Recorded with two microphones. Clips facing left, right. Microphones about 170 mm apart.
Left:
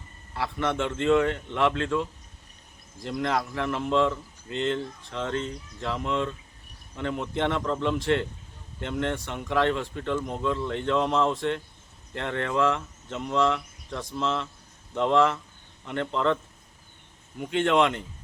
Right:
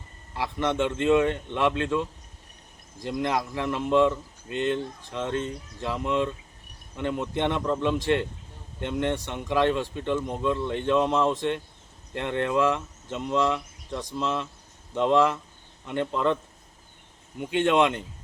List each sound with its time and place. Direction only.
0.3 s speech: 15° right (ahead or behind)
17.7 s speech: 15° right (ahead or behind)